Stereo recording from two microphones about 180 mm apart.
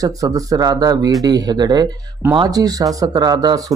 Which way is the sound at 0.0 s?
20° right (ahead or behind).